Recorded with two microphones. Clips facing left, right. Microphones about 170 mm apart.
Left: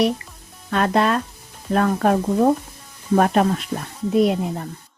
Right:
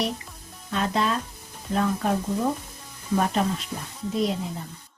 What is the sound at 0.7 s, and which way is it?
Speech, 65° left (ahead or behind).